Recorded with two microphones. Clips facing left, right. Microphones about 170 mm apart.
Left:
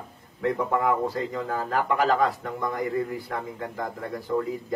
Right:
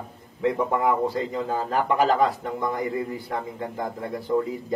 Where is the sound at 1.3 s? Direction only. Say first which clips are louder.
Right 2 dB; 20° right (ahead or behind).